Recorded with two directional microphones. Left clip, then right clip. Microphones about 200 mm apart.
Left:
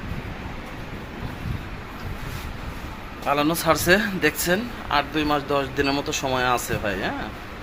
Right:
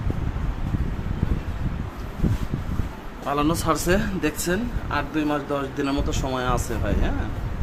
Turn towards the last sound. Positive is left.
turn(degrees=-5)  # may be behind; listen again after turning